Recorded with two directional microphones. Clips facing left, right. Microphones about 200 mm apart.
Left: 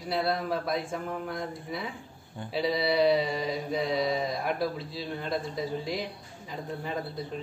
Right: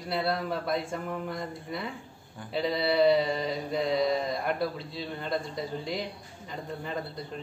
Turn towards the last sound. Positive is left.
turn(degrees=5)  # may be behind; listen again after turning